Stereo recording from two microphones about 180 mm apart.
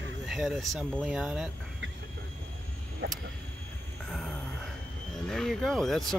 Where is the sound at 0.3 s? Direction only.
Centre (ahead or behind).